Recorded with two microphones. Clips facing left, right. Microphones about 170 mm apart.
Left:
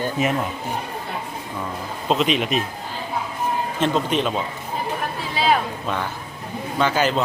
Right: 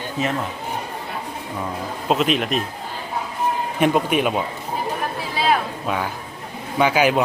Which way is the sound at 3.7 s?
10° right (ahead or behind).